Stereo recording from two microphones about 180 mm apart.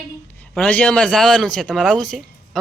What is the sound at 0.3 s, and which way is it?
A man's voice, 5° left (ahead or behind).